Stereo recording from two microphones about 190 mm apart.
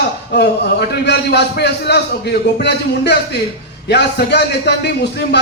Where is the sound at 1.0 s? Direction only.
60° left (ahead or behind).